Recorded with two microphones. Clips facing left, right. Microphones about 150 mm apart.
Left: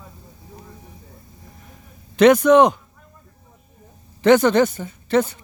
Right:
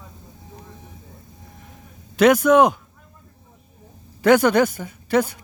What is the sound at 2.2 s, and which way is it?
Speech, 5° right (ahead or behind).